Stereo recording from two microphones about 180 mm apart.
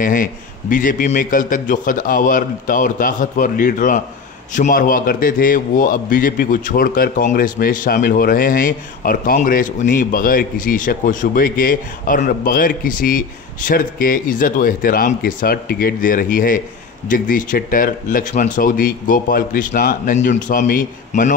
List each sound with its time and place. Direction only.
0.0 s a man's voice: 50° left (ahead or behind)